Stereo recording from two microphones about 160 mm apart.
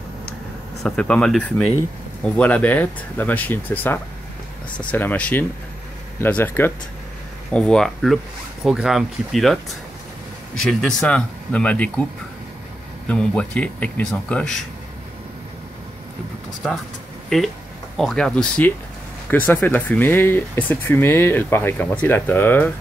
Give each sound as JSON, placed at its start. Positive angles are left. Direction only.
{"t": 0.8, "sound": "speech", "side_deg": 5}
{"t": 13.1, "sound": "speech", "side_deg": 5}
{"t": 17.3, "sound": "speech", "side_deg": 5}